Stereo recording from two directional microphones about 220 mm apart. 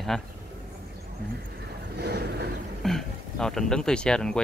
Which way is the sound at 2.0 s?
50° right (ahead or behind).